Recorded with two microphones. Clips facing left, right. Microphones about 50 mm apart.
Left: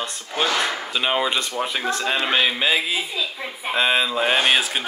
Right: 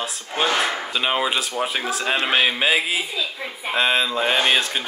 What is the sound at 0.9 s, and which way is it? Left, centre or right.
Speech, centre.